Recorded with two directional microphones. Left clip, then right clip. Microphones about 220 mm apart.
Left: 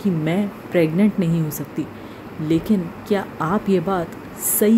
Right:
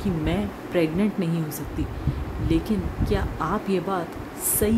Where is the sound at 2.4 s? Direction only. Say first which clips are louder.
Left 5 dB; 15° left (ahead or behind).